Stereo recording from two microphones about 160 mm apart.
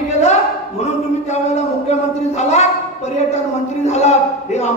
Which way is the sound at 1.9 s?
45° left (ahead or behind).